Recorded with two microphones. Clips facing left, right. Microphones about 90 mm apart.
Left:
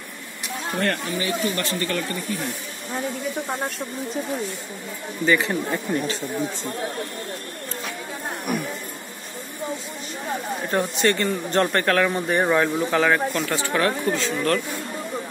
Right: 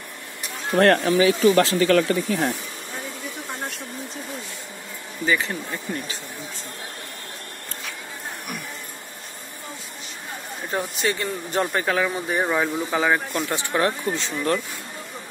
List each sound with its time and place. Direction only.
0.7 s speech: 80° right
5.2 s speech: 5° right (ahead or behind)
10.7 s speech: centre (ahead or behind); by 14.6 s 20° right (ahead or behind)